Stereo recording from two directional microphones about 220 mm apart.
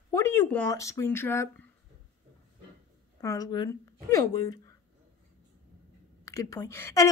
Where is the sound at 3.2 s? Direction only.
15° left (ahead or behind).